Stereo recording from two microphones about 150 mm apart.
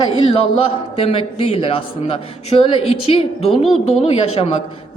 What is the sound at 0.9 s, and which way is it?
A man's voice, 40° left (ahead or behind).